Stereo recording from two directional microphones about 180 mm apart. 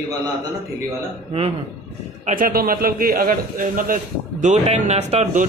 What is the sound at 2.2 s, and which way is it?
A man's voice, 50° right (ahead or behind).